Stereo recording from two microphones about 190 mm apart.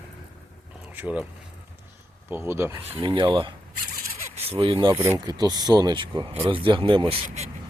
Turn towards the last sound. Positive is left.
turn(degrees=-30)  # may be behind; listen again after turning